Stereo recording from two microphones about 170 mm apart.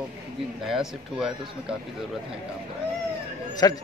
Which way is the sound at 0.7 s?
5° right (ahead or behind).